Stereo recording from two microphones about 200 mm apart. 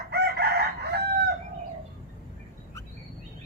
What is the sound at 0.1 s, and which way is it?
Chicken, 55° right (ahead or behind).